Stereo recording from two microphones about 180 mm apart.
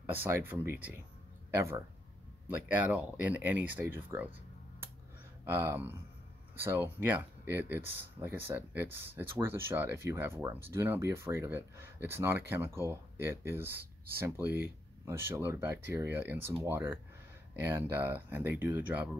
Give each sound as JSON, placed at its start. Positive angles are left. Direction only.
{"t": 0.0, "sound": "speech", "side_deg": -10}
{"t": 5.4, "sound": "speech", "side_deg": -15}
{"t": 7.0, "sound": "speech", "side_deg": -10}